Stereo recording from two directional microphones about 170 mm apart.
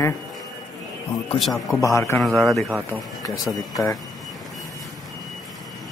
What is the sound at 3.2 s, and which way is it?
Speech, 20° left (ahead or behind).